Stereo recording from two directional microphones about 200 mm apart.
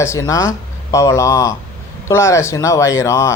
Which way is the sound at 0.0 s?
15° left (ahead or behind).